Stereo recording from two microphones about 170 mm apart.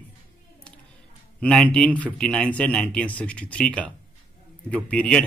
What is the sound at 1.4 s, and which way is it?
Speech, 5° left (ahead or behind).